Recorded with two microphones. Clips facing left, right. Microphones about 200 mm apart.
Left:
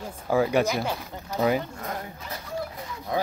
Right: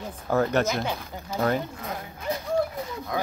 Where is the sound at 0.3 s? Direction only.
10° left (ahead or behind).